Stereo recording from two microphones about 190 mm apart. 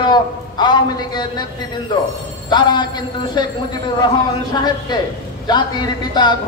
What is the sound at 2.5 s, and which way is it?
A man's voice, 25° left (ahead or behind).